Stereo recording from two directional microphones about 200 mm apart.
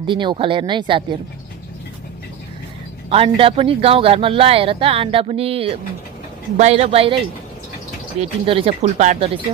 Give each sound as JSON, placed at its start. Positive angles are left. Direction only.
{"t": 0.0, "sound": "speech", "side_deg": -25}
{"t": 3.1, "sound": "speech", "side_deg": -30}
{"t": 8.2, "sound": "speech", "side_deg": -30}